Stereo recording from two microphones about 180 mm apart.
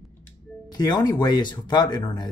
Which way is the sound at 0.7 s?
20° left (ahead or behind).